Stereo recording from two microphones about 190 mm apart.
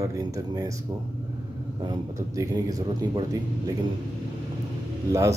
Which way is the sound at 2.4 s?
20° right (ahead or behind).